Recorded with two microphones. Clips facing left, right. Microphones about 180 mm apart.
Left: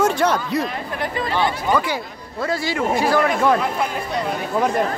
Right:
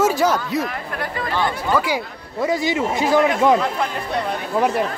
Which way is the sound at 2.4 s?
20° right (ahead or behind).